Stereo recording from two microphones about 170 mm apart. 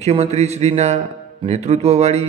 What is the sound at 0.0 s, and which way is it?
A man's voice, 40° right (ahead or behind).